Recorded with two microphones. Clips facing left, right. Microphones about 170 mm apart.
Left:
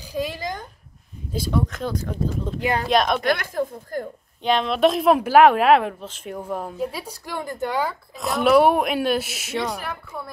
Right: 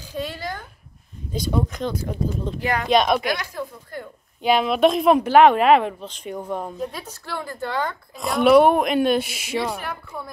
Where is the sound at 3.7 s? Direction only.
40° left (ahead or behind).